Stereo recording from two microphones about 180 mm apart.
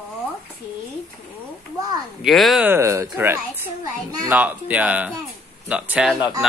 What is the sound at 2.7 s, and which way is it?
Speech, 15° right (ahead or behind).